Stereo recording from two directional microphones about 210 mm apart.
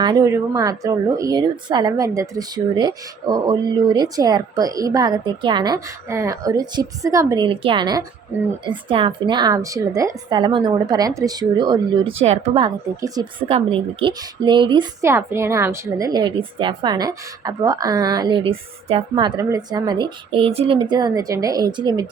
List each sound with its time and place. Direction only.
0.0 s a woman's voice: 20° right (ahead or behind)